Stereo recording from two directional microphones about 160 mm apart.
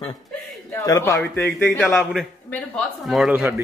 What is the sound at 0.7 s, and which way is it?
Speech, 20° left (ahead or behind).